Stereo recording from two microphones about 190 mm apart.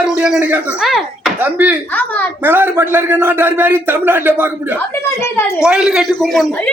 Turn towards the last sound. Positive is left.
turn(degrees=0)  # may be behind; listen again after turning